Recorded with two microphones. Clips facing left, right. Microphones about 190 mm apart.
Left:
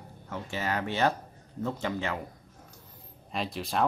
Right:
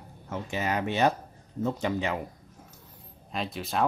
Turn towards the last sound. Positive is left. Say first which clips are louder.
# right 1 dB
turn(degrees=0)  # may be behind; listen again after turning